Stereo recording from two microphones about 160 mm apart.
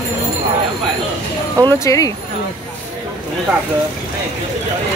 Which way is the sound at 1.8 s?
20° left (ahead or behind).